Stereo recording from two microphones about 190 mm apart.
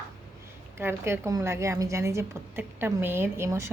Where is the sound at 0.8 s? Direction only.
10° right (ahead or behind).